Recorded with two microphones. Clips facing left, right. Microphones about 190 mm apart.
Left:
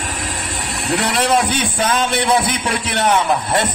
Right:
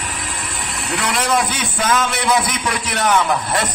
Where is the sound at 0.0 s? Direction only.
40° left (ahead or behind).